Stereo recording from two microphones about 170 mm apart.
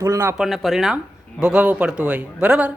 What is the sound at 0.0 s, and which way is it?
Speech, 15° right (ahead or behind).